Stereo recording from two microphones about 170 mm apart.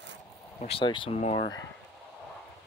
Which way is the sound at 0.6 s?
35° left (ahead or behind).